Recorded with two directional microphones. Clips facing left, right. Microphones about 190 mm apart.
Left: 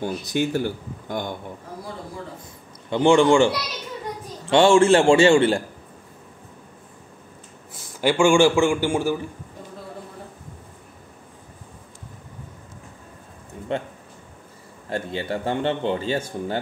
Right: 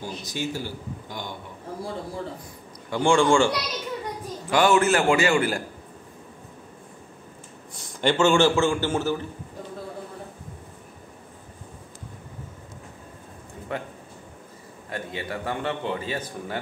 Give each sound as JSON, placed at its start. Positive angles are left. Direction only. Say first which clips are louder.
{"t": 0.2, "sound": "speech", "louder": "left 7 dB", "side_deg": 60}
{"t": 2.9, "sound": "speech", "louder": "left 4 dB", "side_deg": 20}
{"t": 4.5, "sound": "speech", "louder": "left 5 dB", "side_deg": 25}
{"t": 7.7, "sound": "a man's voice", "louder": "left 2 dB", "side_deg": 10}
{"t": 13.7, "sound": "speech", "louder": "left 5 dB", "side_deg": 25}
{"t": 14.9, "sound": "speech", "louder": "left 5 dB", "side_deg": 30}